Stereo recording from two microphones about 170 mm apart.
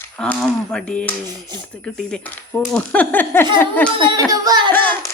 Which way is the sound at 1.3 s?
25° right (ahead or behind).